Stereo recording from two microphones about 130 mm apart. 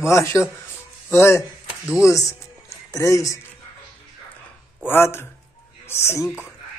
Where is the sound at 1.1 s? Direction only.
20° left (ahead or behind).